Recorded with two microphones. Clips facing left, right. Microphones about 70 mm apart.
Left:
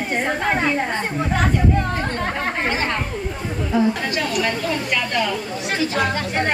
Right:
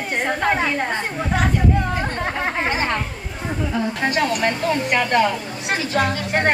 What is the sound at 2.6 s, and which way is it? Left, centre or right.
Speech, centre.